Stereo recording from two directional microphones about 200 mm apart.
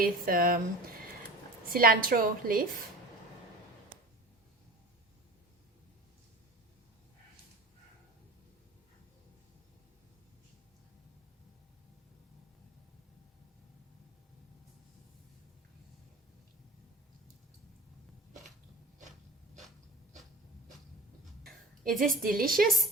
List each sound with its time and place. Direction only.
0.0 s a woman's voice: 45° right (ahead or behind)
1.6 s a woman's voice: 45° right (ahead or behind)
21.4 s a sound: centre (ahead or behind)
22.0 s a woman's voice: 45° right (ahead or behind)